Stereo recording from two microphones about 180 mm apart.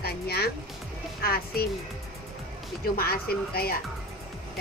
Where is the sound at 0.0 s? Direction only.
60° left (ahead or behind).